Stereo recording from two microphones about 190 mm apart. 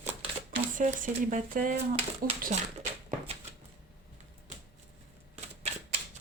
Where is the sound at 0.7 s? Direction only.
40° right (ahead or behind).